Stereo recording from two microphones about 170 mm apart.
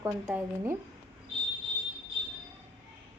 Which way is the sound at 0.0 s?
10° right (ahead or behind).